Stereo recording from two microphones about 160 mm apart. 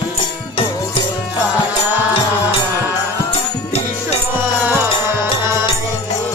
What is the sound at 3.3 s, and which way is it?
Music, 40° left (ahead or behind).